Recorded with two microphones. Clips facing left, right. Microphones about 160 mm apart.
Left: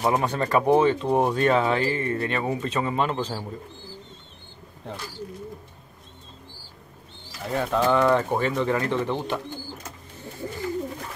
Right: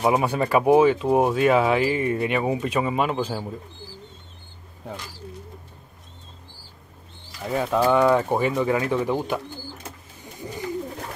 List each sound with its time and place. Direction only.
0.0 s speech: 10° right (ahead or behind)
7.4 s speech: 10° right (ahead or behind)
10.4 s bird: 15° right (ahead or behind)